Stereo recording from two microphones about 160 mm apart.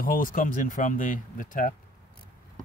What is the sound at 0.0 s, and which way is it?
Speech, 60° left (ahead or behind).